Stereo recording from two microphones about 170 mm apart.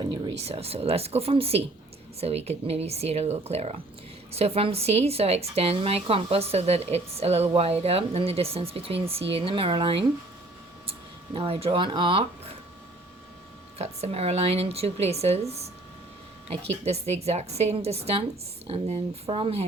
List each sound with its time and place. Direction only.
0.0 s speech: 30° right (ahead or behind)
11.3 s speech: 35° right (ahead or behind)
13.7 s speech: 40° right (ahead or behind)